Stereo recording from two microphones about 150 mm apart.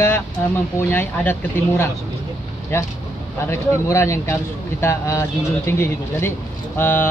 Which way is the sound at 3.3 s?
20° left (ahead or behind).